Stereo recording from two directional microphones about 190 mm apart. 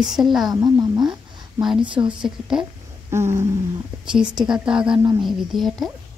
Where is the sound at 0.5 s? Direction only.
20° right (ahead or behind).